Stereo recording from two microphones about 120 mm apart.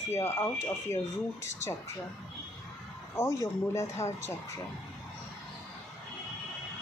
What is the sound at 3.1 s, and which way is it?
Speech, 25° left (ahead or behind).